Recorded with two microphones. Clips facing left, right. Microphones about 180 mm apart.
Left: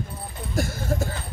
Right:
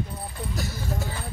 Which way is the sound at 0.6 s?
50° left (ahead or behind).